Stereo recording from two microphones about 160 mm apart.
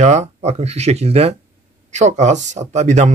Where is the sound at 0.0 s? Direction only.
45° right (ahead or behind).